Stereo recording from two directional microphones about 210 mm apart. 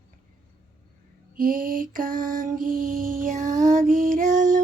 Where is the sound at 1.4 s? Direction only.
40° right (ahead or behind).